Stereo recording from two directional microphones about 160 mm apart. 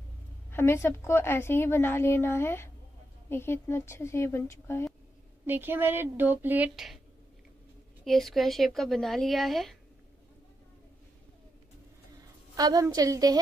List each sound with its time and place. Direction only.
0.5 s a woman's voice: 15° left (ahead or behind)
5.5 s speech: 15° right (ahead or behind)
8.0 s speech: centre (ahead or behind)
12.5 s a woman's voice: 25° right (ahead or behind)